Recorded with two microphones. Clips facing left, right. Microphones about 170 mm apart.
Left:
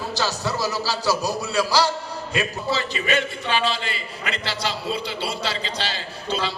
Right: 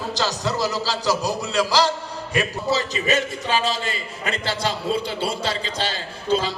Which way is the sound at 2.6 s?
40° right (ahead or behind).